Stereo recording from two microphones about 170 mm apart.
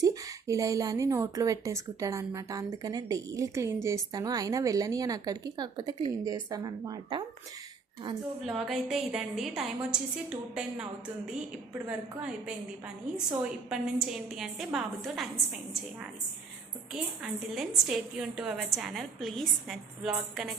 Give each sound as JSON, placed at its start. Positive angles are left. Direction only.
{"t": 0.0, "sound": "a woman's voice", "side_deg": -20}
{"t": 8.4, "sound": "a woman's voice", "side_deg": 0}
{"t": 16.9, "sound": "a woman's voice", "side_deg": 0}